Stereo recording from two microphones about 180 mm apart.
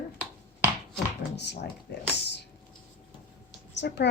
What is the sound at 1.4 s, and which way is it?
Speech, 70° left (ahead or behind).